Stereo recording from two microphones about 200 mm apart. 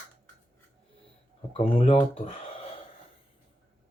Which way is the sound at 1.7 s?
25° left (ahead or behind).